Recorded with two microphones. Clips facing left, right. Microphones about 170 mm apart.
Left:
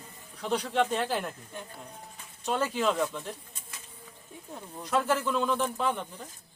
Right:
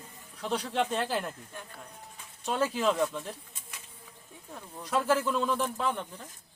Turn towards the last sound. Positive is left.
turn(degrees=0)  # may be behind; listen again after turning